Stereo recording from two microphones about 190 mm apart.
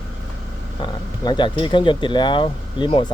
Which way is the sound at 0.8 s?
25° left (ahead or behind).